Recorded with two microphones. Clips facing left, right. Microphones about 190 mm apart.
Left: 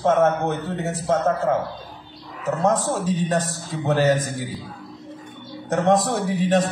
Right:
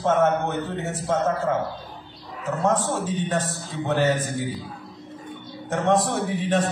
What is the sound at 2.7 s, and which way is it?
A man's voice, 40° left (ahead or behind).